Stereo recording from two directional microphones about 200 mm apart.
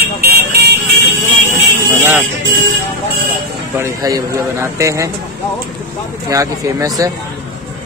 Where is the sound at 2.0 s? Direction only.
5° right (ahead or behind).